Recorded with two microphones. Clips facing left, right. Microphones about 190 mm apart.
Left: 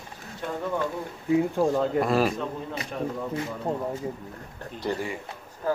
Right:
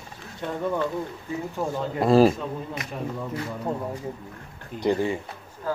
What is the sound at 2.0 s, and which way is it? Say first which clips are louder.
Speech: right 9 dB; 30° right (ahead or behind).